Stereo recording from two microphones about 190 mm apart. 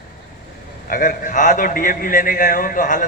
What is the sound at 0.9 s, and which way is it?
A man's voice, 45° left (ahead or behind).